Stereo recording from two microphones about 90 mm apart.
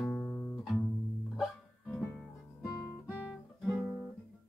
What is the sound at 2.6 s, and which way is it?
Guitar, 35° left (ahead or behind).